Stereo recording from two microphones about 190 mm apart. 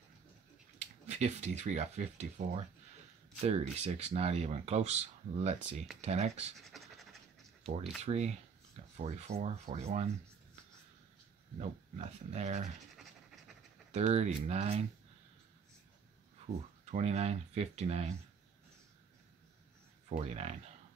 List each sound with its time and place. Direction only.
0.7 s speech: 35° right (ahead or behind)
6.6 s pant: centre (ahead or behind)
8.0 s speech: 35° right (ahead or behind)
11.5 s speech: 35° right (ahead or behind)
13.9 s speech: 35° right (ahead or behind)
16.8 s speech: 35° right (ahead or behind)
20.1 s speech: 35° right (ahead or behind)